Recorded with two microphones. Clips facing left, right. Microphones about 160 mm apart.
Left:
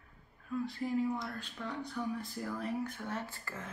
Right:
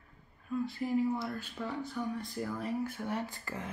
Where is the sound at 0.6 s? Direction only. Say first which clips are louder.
Right 2 dB; centre (ahead or behind).